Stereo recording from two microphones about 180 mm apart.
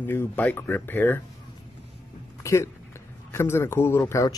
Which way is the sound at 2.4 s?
15° left (ahead or behind).